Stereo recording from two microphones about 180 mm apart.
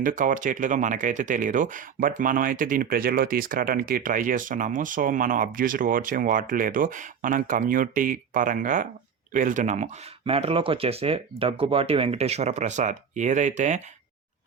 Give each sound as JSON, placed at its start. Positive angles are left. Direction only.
{"t": 0.0, "sound": "speech", "side_deg": -50}